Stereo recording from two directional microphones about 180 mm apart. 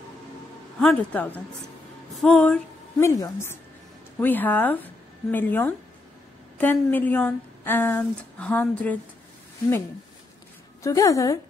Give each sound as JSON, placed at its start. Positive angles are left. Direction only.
{"t": 0.7, "sound": "a woman's voice", "side_deg": 5}
{"t": 2.1, "sound": "music", "side_deg": 5}
{"t": 3.0, "sound": "a woman's voice", "side_deg": 15}
{"t": 10.8, "sound": "a woman's voice", "side_deg": 20}